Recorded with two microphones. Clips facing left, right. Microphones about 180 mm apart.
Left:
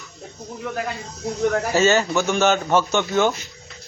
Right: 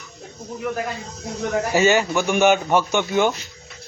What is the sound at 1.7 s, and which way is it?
A man's voice, 15° right (ahead or behind).